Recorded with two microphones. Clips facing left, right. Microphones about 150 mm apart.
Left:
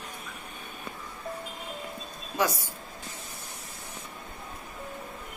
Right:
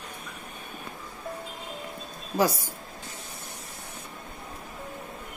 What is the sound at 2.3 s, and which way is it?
Speech, 30° right (ahead or behind).